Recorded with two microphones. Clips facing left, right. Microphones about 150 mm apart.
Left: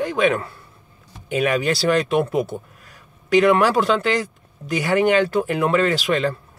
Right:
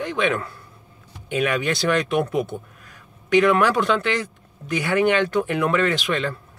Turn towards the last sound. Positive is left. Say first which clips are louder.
# left 3 dB
turn(degrees=35)  # may be behind; listen again after turning